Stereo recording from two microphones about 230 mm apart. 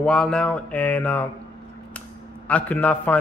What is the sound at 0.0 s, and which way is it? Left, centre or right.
A man's voice, centre.